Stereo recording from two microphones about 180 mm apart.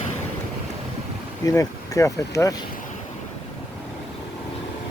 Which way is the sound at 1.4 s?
20° left (ahead or behind).